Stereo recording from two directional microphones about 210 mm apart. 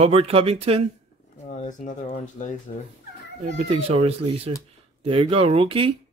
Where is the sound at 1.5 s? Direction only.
35° left (ahead or behind).